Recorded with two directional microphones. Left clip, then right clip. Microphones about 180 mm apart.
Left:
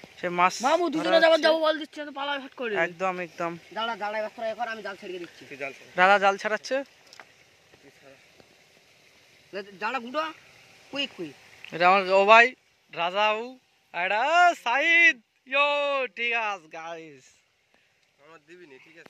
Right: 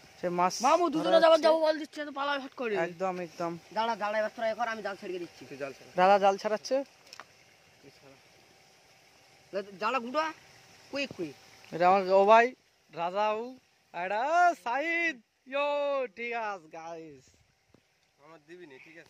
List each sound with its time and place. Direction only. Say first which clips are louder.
0.2 s speech: left 5 dB; 5° right (ahead or behind)
0.7 s a man's voice: left 2 dB; 45° left (ahead or behind)
1.9 s speech: left 1 dB; 15° left (ahead or behind); by 3.5 s centre (ahead or behind)
4.0 s speech: even; 15° right (ahead or behind)
5.9 s speech: left 3 dB; 15° right (ahead or behind)
9.6 s speech: even; centre (ahead or behind)
11.7 s speech: left 3 dB; 10° right (ahead or behind)
18.3 s speech: left 1 dB; 50° right (ahead or behind)